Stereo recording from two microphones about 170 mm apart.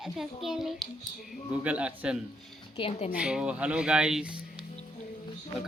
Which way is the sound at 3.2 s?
5° right (ahead or behind).